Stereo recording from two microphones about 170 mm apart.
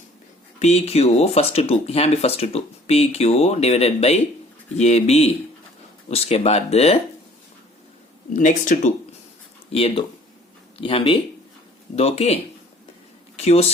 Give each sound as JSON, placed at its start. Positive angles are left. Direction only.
{"t": 0.6, "sound": "speech", "side_deg": 40}
{"t": 8.3, "sound": "speech", "side_deg": 50}
{"t": 9.7, "sound": "speech", "side_deg": 35}